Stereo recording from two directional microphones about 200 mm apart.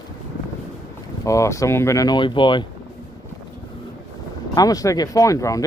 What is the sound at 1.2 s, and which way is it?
Speech, 15° left (ahead or behind).